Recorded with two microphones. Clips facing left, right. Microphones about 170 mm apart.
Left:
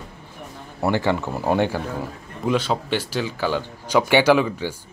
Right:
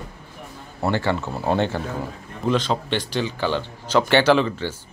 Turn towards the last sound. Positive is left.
turn(degrees=10)  # may be behind; listen again after turning